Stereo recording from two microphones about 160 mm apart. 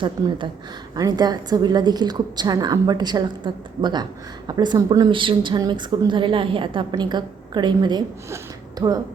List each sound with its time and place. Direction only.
0.0 s a woman's voice: 30° right (ahead or behind)